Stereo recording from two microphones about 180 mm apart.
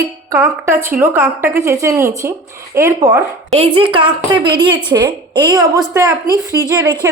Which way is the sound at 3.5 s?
30° right (ahead or behind).